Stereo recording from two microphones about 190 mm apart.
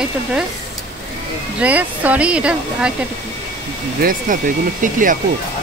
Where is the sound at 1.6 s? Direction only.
10° right (ahead or behind).